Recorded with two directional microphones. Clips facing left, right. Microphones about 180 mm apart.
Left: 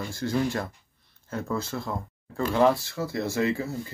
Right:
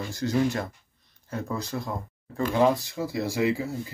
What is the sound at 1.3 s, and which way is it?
Speech, 15° right (ahead or behind).